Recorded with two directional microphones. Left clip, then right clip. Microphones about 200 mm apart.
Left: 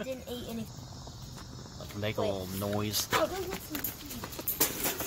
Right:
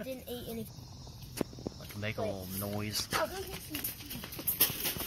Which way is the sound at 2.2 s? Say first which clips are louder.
Left 6 dB; 10° left (ahead or behind).